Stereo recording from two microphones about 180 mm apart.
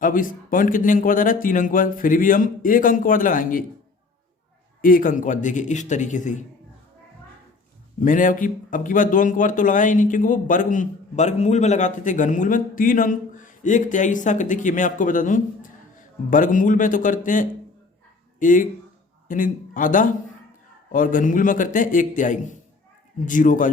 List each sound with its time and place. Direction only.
0.0 s speech: 50° left (ahead or behind)
4.8 s speech: 50° left (ahead or behind)
8.0 s speech: 50° left (ahead or behind)